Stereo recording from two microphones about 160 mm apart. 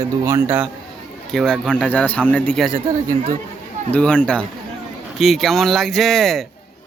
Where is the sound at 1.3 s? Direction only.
5° left (ahead or behind).